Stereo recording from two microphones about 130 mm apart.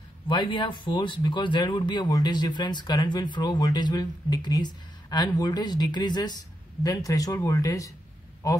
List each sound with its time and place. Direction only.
0.3 s speech: 35° left (ahead or behind)